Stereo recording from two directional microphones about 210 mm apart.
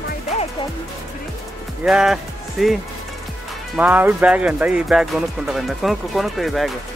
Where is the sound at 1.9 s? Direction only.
Centre (ahead or behind).